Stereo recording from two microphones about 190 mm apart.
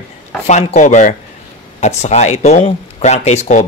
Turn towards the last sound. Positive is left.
turn(degrees=35)  # may be behind; listen again after turning